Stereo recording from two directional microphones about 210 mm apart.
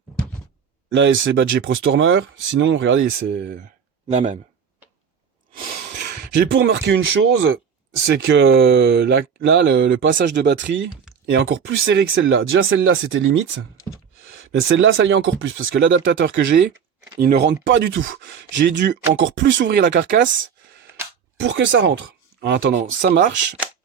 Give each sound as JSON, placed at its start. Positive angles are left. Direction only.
{"t": 0.9, "sound": "speech", "side_deg": -60}
{"t": 4.1, "sound": "speech", "side_deg": -35}
{"t": 6.1, "sound": "speech", "side_deg": -55}
{"t": 8.1, "sound": "speech", "side_deg": -55}
{"t": 14.5, "sound": "speech", "side_deg": -60}
{"t": 17.2, "sound": "speech", "side_deg": -50}
{"t": 21.4, "sound": "speech", "side_deg": -60}
{"t": 22.9, "sound": "speech", "side_deg": -50}